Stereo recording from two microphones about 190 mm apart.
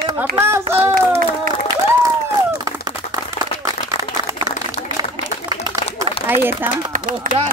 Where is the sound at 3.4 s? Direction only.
35° left (ahead or behind).